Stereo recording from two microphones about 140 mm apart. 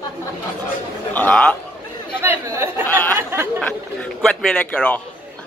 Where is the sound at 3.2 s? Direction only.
15° right (ahead or behind).